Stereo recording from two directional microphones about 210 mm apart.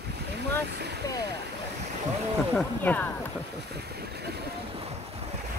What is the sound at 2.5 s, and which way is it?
Speech, 10° left (ahead or behind).